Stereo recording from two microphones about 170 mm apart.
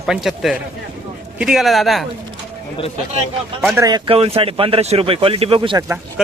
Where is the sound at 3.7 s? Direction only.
25° right (ahead or behind).